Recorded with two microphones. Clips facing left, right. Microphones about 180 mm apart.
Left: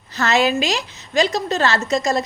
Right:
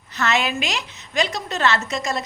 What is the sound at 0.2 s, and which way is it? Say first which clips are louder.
A woman's voice: left 5 dB; 35° left (ahead or behind).